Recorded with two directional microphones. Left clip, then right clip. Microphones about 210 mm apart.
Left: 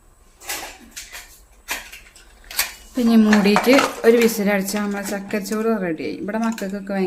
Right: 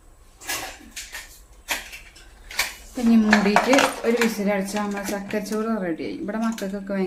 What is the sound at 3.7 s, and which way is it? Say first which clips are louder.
Speech: left 5 dB; 40° left (ahead or behind).